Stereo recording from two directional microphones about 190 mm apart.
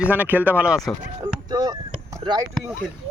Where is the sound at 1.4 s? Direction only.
20° right (ahead or behind).